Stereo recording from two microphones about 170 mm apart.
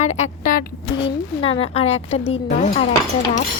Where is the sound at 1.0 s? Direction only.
30° left (ahead or behind).